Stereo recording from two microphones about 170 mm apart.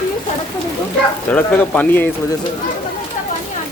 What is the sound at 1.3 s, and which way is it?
Speech, 10° left (ahead or behind).